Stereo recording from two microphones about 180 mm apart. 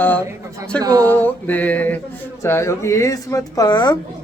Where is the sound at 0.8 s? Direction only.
20° right (ahead or behind).